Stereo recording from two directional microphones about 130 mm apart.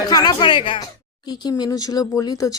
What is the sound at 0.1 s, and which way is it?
Speech, 30° left (ahead or behind).